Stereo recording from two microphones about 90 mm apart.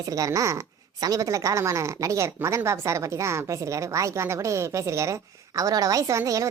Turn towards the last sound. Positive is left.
turn(degrees=-40)  # may be behind; listen again after turning